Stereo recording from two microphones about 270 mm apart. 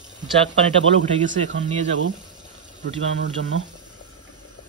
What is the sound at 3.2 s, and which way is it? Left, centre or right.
Speech, right.